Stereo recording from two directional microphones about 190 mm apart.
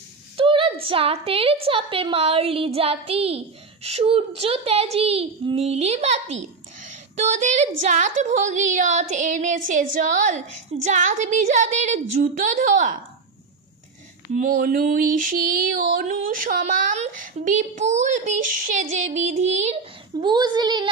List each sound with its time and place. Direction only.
0.4 s a woman's voice: 30° right (ahead or behind)
14.3 s a sound: 45° right (ahead or behind)
16.0 s a woman's voice: 45° right (ahead or behind); by 20.9 s 25° right (ahead or behind)